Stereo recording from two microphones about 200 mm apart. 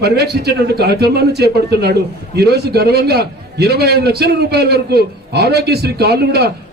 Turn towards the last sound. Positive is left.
turn(degrees=-55)  # may be behind; listen again after turning